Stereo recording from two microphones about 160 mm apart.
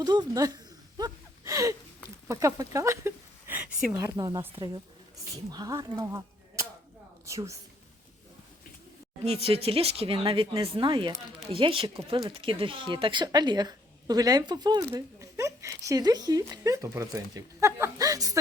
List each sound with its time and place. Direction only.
0.0 s a sound: 25° right (ahead or behind)
2.2 s speech: 20° right (ahead or behind)
3.9 s speech: 20° right (ahead or behind)
5.5 s speech: 25° right (ahead or behind)
9.2 s speech: 40° right (ahead or behind); by 18.3 s 20° right (ahead or behind)